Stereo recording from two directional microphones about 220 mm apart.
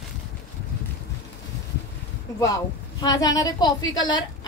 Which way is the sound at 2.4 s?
15° left (ahead or behind).